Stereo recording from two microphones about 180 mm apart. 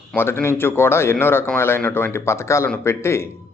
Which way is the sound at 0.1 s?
10° left (ahead or behind).